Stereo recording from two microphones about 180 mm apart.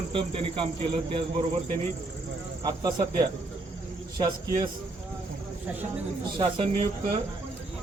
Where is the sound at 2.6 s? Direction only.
20° right (ahead or behind).